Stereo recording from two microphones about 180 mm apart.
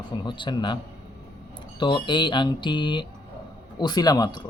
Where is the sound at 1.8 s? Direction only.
25° left (ahead or behind).